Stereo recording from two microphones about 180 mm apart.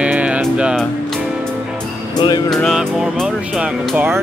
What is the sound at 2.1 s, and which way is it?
Speech, 20° left (ahead or behind).